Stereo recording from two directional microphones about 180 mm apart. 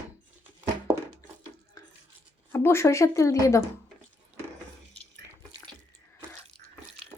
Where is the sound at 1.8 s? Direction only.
20° left (ahead or behind).